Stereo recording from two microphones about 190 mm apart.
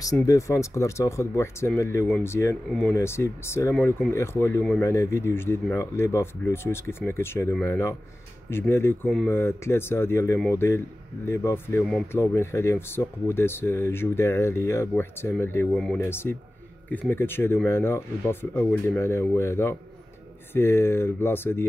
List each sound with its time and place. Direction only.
0.0 s speech: 15° left (ahead or behind)